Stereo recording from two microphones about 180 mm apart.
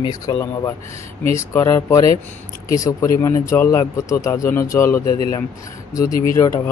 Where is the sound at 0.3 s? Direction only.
20° left (ahead or behind).